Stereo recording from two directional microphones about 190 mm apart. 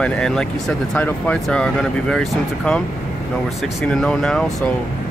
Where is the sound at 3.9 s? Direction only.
5° left (ahead or behind).